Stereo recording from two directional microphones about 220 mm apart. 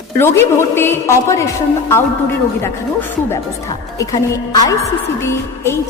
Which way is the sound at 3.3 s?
15° left (ahead or behind).